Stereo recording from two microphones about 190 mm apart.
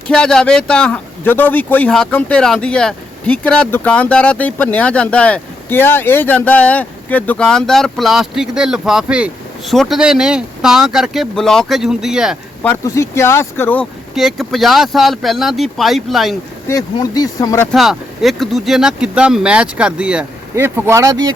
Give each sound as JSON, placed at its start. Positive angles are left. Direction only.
{"t": 0.1, "sound": "a man's voice", "side_deg": 5}
{"t": 12.6, "sound": "speech", "side_deg": 15}
{"t": 14.2, "sound": "a man's voice", "side_deg": 0}
{"t": 16.6, "sound": "speech", "side_deg": 20}
{"t": 17.7, "sound": "a man's voice", "side_deg": 0}